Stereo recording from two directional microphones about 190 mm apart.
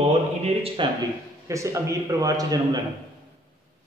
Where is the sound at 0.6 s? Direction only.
30° right (ahead or behind).